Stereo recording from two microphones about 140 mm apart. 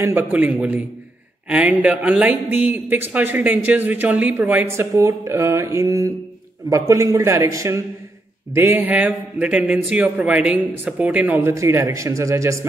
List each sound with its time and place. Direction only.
0.0 s a man's voice: 15° right (ahead or behind)